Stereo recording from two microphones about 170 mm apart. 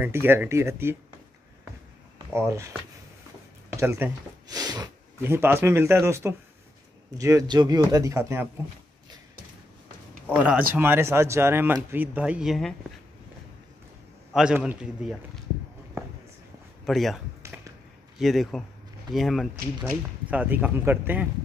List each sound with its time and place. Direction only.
0.0 s speech: 15° right (ahead or behind)
2.3 s speech: 15° right (ahead or behind)
3.7 s speech: 15° right (ahead or behind)
10.2 s speech: 5° right (ahead or behind)
14.3 s a man's voice: 5° right (ahead or behind)
16.0 s a sound: 15° right (ahead or behind)
16.8 s a man's voice: centre (ahead or behind)
17.4 s a sound: 15° right (ahead or behind)
18.1 s a man's voice: centre (ahead or behind)